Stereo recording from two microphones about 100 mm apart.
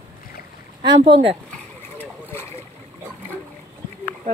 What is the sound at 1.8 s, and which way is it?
Boat, 20° left (ahead or behind).